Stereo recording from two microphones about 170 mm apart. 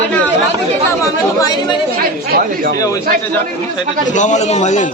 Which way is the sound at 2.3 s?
60° right (ahead or behind).